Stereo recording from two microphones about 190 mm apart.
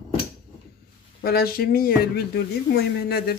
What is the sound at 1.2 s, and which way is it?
Speech, 55° left (ahead or behind).